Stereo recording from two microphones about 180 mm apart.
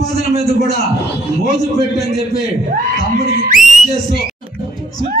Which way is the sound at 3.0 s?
50° right (ahead or behind).